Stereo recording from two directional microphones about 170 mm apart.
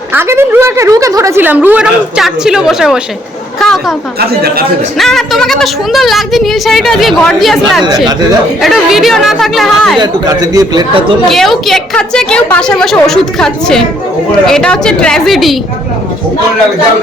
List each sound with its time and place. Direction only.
0.1 s a woman's voice: 15° right (ahead or behind)
4.2 s speech: 65° right (ahead or behind)
4.9 s a woman's voice: centre (ahead or behind)
10.0 s speech: 20° right (ahead or behind)
11.3 s a woman's voice: centre (ahead or behind)